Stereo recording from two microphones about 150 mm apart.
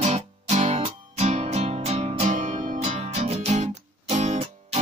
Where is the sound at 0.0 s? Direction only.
50° right (ahead or behind).